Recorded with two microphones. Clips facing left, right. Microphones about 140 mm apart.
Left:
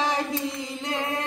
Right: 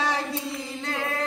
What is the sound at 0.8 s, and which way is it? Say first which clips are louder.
Chant: left 2 dB; 15° left (ahead or behind).